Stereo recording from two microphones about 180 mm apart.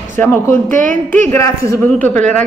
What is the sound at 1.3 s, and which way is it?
Speech, 15° left (ahead or behind).